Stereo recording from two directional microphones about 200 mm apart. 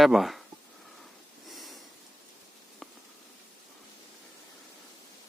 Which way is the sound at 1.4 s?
Centre (ahead or behind).